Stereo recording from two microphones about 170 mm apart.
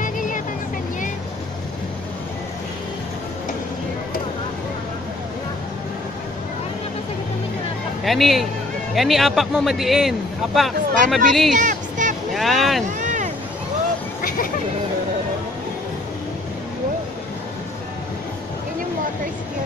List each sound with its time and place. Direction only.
8.0 s speech: centre (ahead or behind)
11.6 s music: 50° right (ahead or behind)
12.4 s boat: centre (ahead or behind)
13.0 s a sound: 45° right (ahead or behind)